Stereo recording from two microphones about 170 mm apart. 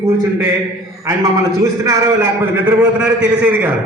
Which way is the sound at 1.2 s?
20° right (ahead or behind).